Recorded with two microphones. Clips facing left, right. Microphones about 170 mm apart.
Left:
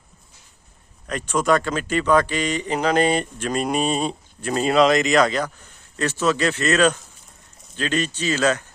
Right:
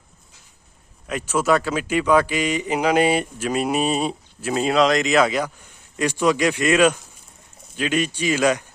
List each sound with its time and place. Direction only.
1.0 s speech: 5° right (ahead or behind)